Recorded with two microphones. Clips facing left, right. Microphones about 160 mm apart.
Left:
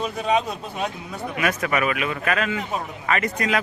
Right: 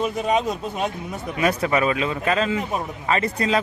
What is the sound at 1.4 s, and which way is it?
Speech, 25° right (ahead or behind).